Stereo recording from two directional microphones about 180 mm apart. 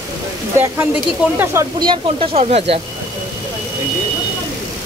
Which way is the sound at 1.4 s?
20° right (ahead or behind).